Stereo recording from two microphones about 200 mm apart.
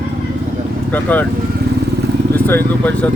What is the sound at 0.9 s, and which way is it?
Speech, 10° left (ahead or behind).